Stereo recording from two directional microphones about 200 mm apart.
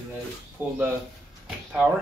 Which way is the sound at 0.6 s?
10° right (ahead or behind).